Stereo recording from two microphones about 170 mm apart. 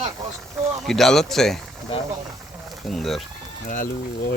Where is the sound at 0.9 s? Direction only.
Centre (ahead or behind).